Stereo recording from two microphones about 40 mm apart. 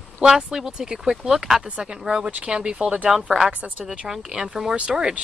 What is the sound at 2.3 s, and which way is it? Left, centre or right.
Speech, right.